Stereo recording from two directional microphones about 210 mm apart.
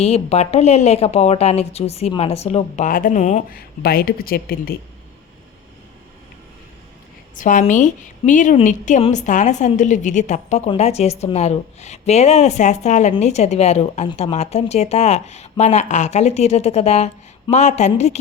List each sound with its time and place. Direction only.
0.0 s a woman's voice: 30° left (ahead or behind); by 4.8 s 45° left (ahead or behind)
7.3 s a woman's voice: 35° left (ahead or behind)